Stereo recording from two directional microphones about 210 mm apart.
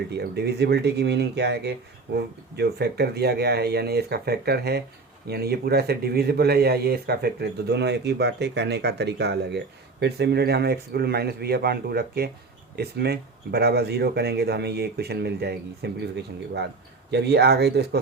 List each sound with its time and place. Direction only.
0.1 s a man's voice: 50° right (ahead or behind)